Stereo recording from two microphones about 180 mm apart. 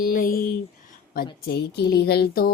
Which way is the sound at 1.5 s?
65° left (ahead or behind).